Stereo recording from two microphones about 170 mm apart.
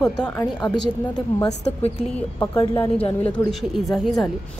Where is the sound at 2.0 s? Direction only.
10° left (ahead or behind).